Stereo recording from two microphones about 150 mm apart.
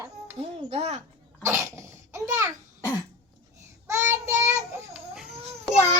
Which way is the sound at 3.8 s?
20° right (ahead or behind).